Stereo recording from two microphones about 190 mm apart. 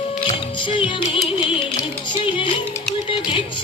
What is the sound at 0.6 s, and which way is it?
Music, 25° left (ahead or behind).